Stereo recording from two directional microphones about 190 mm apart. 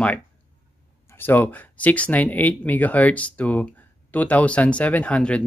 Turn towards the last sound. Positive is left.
turn(degrees=5)  # may be behind; listen again after turning